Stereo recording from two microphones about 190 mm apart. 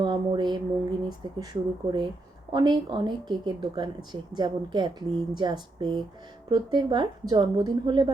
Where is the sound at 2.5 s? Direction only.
25° right (ahead or behind).